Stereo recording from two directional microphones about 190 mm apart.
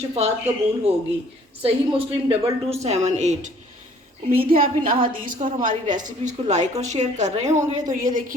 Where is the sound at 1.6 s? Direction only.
30° right (ahead or behind).